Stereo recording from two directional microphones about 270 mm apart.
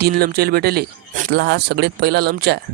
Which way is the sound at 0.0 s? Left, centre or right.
Right.